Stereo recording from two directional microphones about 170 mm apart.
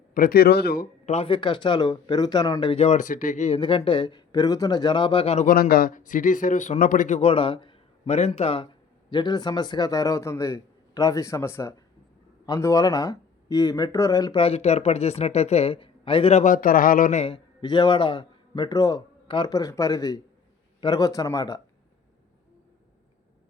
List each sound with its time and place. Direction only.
0.1 s speech: 60° left (ahead or behind)
1.0 s speech: 40° left (ahead or behind)
5.5 s speech: 60° left (ahead or behind); by 14.4 s 20° left (ahead or behind)
14.4 s speech: 40° left (ahead or behind)
17.2 s a man's voice: 30° left (ahead or behind)